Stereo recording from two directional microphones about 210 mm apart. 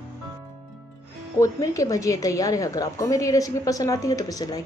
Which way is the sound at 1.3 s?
15° left (ahead or behind).